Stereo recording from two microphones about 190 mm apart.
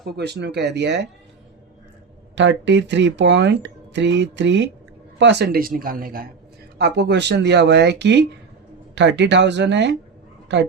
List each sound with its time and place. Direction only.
0.0 s speech: 60° right (ahead or behind)
2.3 s speech: 70° right (ahead or behind); by 6.2 s 50° right (ahead or behind)
6.7 s speech: 60° right (ahead or behind)